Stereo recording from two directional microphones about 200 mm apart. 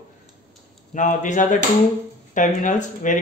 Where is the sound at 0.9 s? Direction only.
40° left (ahead or behind).